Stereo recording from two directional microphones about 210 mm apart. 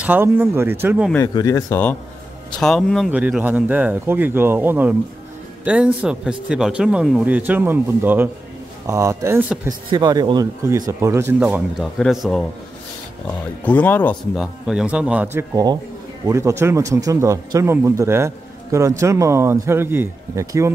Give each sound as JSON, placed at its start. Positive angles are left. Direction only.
{"t": 0.0, "sound": "a man's voice", "side_deg": -10}
{"t": 1.1, "sound": "a man's voice", "side_deg": 15}
{"t": 9.8, "sound": "a man's voice", "side_deg": -20}
{"t": 13.7, "sound": "speech", "side_deg": 10}
{"t": 15.3, "sound": "a man's voice", "side_deg": -20}